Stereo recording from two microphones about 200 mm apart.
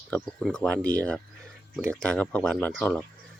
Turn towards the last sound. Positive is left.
turn(degrees=5)  # may be behind; listen again after turning